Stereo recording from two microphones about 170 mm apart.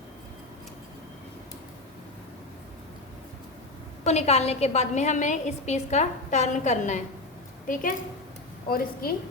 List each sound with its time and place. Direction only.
4.0 s a woman's voice: 40° left (ahead or behind); by 9.1 s 60° left (ahead or behind)